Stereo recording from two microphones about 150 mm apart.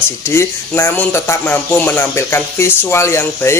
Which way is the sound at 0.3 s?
15° left (ahead or behind).